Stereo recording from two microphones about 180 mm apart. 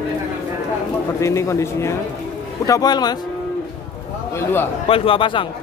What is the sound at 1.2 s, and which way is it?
A man's voice, 15° left (ahead or behind).